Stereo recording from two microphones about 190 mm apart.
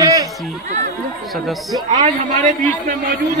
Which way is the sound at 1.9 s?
40° right (ahead or behind).